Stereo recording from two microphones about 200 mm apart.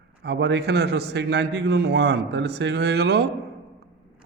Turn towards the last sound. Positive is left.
turn(degrees=-55)  # may be behind; listen again after turning